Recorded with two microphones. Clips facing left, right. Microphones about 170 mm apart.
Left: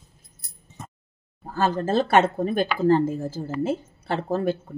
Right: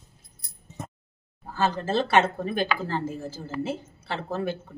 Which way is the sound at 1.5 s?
45° left (ahead or behind).